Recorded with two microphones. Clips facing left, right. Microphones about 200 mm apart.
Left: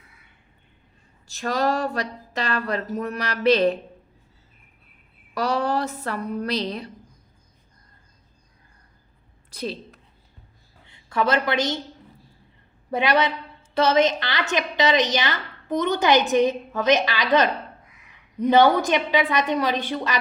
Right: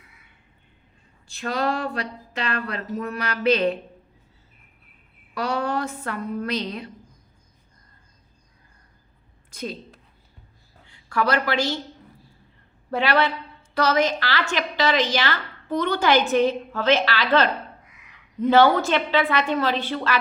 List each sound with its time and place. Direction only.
1.3 s speech: 40° left (ahead or behind)
5.3 s a woman's voice: 40° left (ahead or behind)
9.5 s a sound: 35° left (ahead or behind)
10.8 s speech: 20° left (ahead or behind)
12.9 s a woman's voice: 20° left (ahead or behind)